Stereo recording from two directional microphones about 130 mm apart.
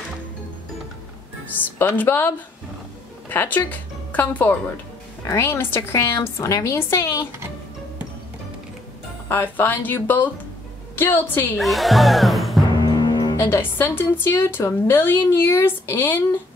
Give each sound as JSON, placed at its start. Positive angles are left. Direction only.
{"t": 1.8, "sound": "a woman's voice", "side_deg": 15}
{"t": 9.3, "sound": "speech", "side_deg": 15}
{"t": 11.5, "sound": "music", "side_deg": 0}
{"t": 12.8, "sound": "music", "side_deg": 30}
{"t": 13.4, "sound": "speech", "side_deg": 20}